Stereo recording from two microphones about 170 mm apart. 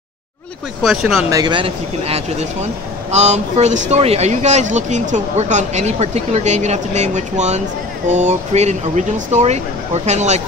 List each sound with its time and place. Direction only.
0.8 s speech: centre (ahead or behind)
1.3 s speech: 25° right (ahead or behind); by 10.4 s 40° right (ahead or behind)